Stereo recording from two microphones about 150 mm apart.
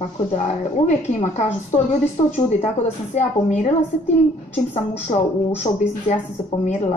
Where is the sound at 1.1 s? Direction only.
50° left (ahead or behind).